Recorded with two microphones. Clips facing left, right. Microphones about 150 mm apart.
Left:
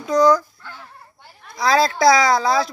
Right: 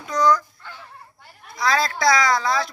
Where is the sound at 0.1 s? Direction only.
40° left (ahead or behind).